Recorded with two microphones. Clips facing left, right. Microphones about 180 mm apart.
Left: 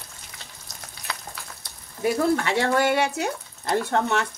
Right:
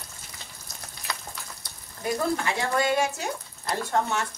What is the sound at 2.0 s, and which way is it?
Speech, 70° left (ahead or behind).